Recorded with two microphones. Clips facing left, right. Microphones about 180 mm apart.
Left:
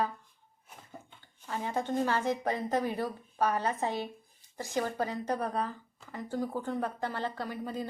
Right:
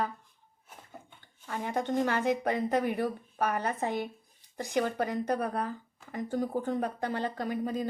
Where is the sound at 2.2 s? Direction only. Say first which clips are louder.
Right 3 dB; 65° right (ahead or behind).